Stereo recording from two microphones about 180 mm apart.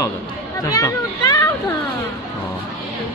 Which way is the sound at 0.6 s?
20° left (ahead or behind).